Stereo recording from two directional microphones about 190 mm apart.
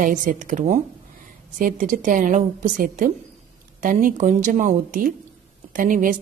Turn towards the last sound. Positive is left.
turn(degrees=-45)  # may be behind; listen again after turning